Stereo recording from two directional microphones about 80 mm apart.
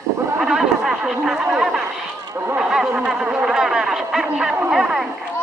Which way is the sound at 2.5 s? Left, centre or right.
Centre.